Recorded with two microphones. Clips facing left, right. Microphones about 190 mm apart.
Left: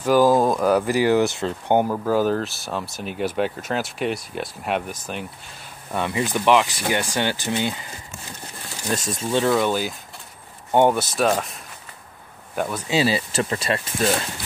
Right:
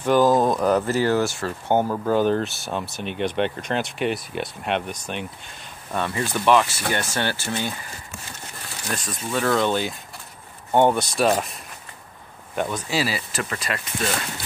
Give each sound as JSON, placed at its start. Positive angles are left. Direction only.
{"t": 0.0, "sound": "speech", "side_deg": 5}
{"t": 2.0, "sound": "speech", "side_deg": 5}
{"t": 5.9, "sound": "speech", "side_deg": 15}
{"t": 8.8, "sound": "speech", "side_deg": 25}
{"t": 9.5, "sound": "speech", "side_deg": 10}
{"t": 12.5, "sound": "speech", "side_deg": 5}
{"t": 12.9, "sound": "speech", "side_deg": 25}